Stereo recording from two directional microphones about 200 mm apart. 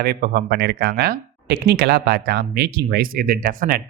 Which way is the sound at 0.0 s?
50° right (ahead or behind).